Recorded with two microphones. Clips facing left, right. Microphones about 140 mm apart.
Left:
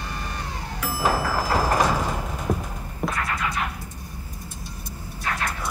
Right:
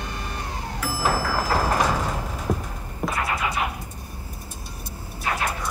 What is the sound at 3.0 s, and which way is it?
Music, 5° right (ahead or behind).